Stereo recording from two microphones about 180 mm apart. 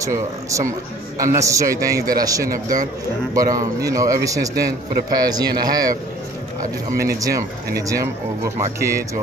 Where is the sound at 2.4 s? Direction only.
50° right (ahead or behind).